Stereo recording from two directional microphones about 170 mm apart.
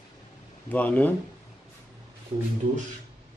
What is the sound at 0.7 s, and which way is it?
Speech, 10° left (ahead or behind).